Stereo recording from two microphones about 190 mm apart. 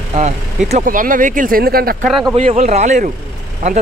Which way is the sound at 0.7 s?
40° right (ahead or behind).